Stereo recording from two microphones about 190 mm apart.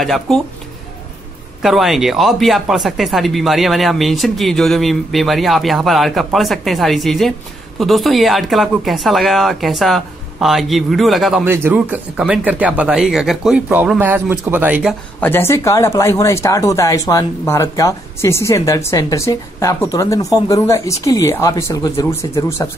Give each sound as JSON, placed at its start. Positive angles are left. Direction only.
{"t": 0.0, "sound": "speech", "side_deg": 0}
{"t": 1.6, "sound": "speech", "side_deg": 0}
{"t": 11.4, "sound": "speech", "side_deg": -10}
{"t": 15.1, "sound": "speech", "side_deg": 10}